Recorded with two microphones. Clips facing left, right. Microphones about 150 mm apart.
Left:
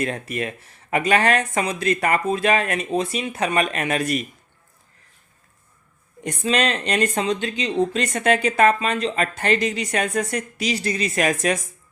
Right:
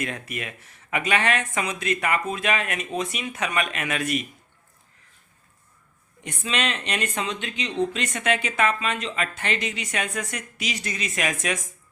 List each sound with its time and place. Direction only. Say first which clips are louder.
0.0 s speech: left 6 dB; 35° left (ahead or behind)
6.2 s speech: left 6 dB; 40° left (ahead or behind)